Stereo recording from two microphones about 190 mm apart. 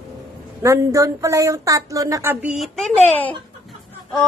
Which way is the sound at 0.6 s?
15° right (ahead or behind).